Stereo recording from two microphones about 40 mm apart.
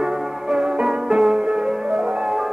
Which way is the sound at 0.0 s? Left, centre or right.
Centre.